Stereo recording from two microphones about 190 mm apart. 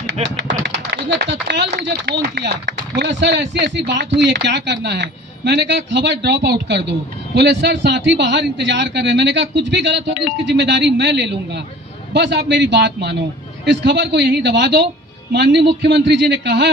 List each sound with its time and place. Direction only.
0.0 s typing: 70° right (ahead or behind)
0.7 s speech: 65° right (ahead or behind)